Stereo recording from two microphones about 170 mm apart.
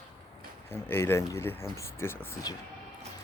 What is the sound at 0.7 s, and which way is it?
Speech, 15° left (ahead or behind).